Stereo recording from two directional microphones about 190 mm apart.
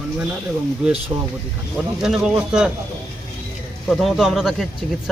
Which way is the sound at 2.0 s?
Centre (ahead or behind).